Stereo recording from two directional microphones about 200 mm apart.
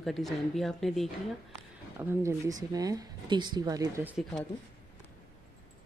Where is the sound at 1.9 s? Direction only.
10° right (ahead or behind).